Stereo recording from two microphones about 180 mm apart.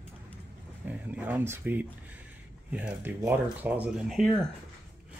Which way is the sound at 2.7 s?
10° right (ahead or behind).